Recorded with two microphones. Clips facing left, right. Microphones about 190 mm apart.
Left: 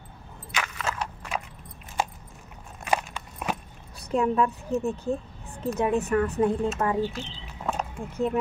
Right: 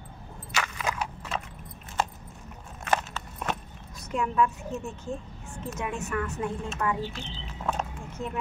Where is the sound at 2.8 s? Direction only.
15° left (ahead or behind).